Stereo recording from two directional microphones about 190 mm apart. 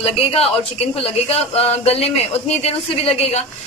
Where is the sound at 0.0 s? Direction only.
30° left (ahead or behind).